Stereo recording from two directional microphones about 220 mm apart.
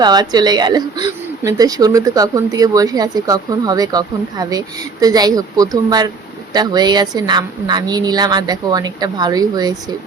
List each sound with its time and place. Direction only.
0.0 s speech: 20° right (ahead or behind)